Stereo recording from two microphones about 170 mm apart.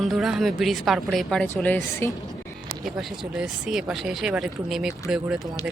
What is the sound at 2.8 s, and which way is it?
Speech, centre (ahead or behind).